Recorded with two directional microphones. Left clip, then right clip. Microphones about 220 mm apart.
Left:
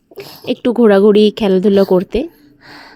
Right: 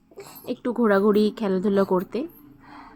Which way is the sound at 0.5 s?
30° left (ahead or behind).